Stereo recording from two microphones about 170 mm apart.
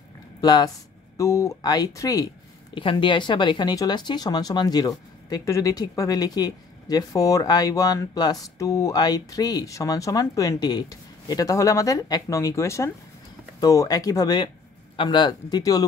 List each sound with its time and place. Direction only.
0.4 s speech: 25° left (ahead or behind)